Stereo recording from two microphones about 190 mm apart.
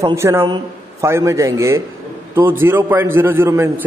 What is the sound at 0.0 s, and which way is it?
A man's voice, 15° right (ahead or behind).